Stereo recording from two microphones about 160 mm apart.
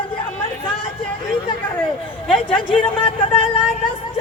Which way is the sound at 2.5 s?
35° left (ahead or behind).